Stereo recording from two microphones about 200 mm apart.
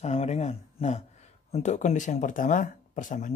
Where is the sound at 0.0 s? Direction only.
30° left (ahead or behind).